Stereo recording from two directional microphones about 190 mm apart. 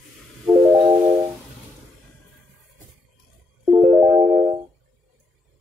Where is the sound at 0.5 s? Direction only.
15° right (ahead or behind).